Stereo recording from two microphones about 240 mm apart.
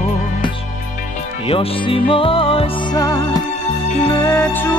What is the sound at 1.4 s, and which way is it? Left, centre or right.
Music, left.